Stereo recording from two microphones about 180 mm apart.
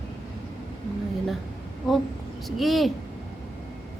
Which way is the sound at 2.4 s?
Centre (ahead or behind).